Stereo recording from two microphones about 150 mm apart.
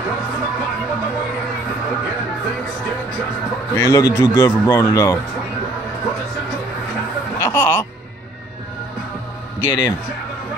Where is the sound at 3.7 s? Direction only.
20° left (ahead or behind).